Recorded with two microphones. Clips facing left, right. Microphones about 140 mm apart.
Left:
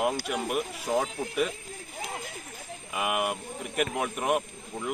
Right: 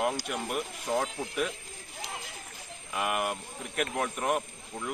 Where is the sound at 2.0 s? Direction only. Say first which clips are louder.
Left 4 dB; 50° left (ahead or behind).